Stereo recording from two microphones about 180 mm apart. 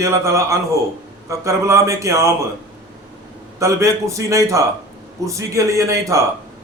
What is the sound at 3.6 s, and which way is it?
A man's voice, 15° right (ahead or behind).